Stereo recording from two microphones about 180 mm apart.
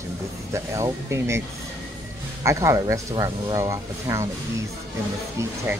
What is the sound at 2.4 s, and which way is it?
Speech, 15° right (ahead or behind).